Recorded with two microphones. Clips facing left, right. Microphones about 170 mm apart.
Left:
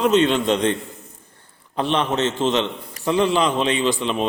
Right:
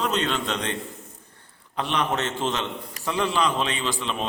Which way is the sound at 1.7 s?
30° left (ahead or behind).